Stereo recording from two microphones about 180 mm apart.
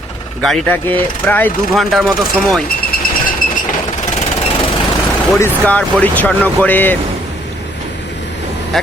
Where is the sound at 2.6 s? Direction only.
50° left (ahead or behind).